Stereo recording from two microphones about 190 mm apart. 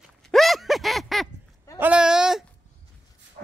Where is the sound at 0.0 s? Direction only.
Centre (ahead or behind).